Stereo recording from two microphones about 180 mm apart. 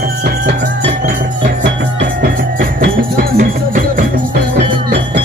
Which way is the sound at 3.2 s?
50° right (ahead or behind).